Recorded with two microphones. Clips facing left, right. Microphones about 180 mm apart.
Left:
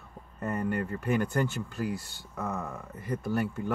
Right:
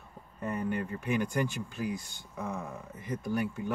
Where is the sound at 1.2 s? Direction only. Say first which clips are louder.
Left 2 dB; 15° right (ahead or behind).